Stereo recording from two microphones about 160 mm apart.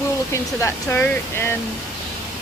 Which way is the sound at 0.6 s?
15° left (ahead or behind).